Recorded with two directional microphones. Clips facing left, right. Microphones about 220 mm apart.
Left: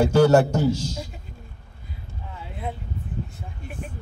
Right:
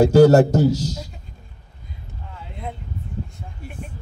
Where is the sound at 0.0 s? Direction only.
40° right (ahead or behind).